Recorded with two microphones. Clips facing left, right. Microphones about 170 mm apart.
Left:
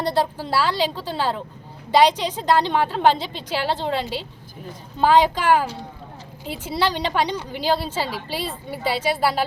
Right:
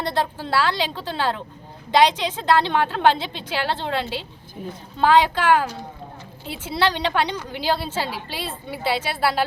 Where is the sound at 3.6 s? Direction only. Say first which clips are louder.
Left 2 dB; 5° left (ahead or behind).